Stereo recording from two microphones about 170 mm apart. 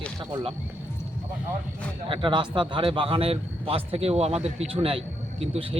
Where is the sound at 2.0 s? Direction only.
30° right (ahead or behind).